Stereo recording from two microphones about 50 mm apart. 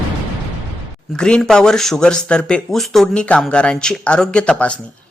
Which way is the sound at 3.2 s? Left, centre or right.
Left.